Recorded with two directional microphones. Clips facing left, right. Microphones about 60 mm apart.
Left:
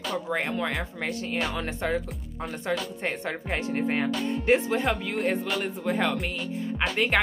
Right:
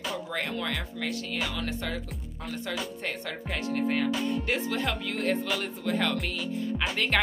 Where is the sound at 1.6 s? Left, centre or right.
Left.